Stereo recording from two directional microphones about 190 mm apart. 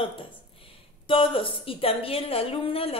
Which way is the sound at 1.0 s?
25° left (ahead or behind).